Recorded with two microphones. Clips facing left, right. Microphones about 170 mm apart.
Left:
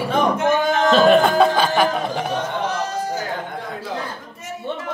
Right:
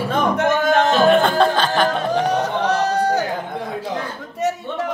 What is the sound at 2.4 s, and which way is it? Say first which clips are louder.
Speech: right 4 dB; 70° right (ahead or behind).